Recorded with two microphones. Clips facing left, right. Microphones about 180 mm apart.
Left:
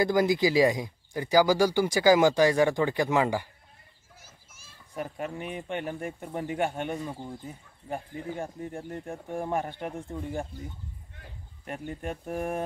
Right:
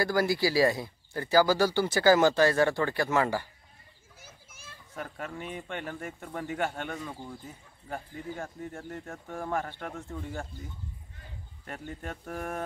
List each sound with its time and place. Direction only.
0.0 s speech: 20° left (ahead or behind)
4.9 s speech: 20° left (ahead or behind)
11.6 s speech: 20° left (ahead or behind)